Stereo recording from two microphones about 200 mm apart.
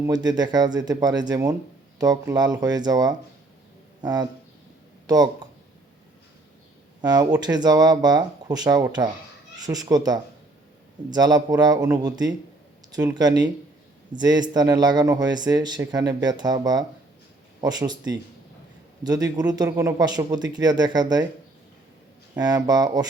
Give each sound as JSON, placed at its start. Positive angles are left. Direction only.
{"t": 0.3, "sound": "speech", "side_deg": -20}
{"t": 7.0, "sound": "speech", "side_deg": -20}
{"t": 22.4, "sound": "speech", "side_deg": -20}